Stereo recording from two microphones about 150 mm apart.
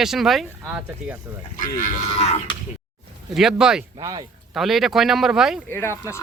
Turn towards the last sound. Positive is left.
turn(degrees=20)  # may be behind; listen again after turning